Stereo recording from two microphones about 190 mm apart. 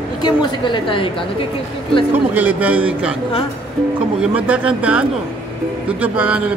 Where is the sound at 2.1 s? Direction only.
10° right (ahead or behind).